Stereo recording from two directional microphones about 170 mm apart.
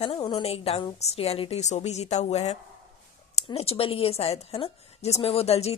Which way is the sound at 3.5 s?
35° left (ahead or behind).